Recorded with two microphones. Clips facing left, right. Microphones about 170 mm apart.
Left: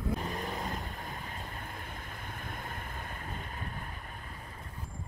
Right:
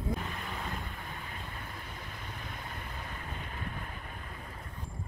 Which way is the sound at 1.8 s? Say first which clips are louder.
Left 1 dB; 50° left (ahead or behind).